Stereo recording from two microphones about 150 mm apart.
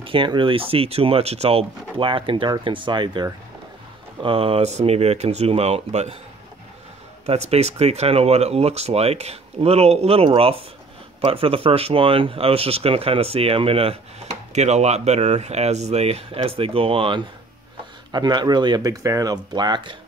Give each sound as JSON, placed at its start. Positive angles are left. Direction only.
{"t": 0.0, "sound": "speech", "side_deg": -35}
{"t": 7.2, "sound": "speech", "side_deg": -45}